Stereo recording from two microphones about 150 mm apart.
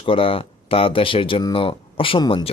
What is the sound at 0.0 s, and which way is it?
Speech, 35° left (ahead or behind).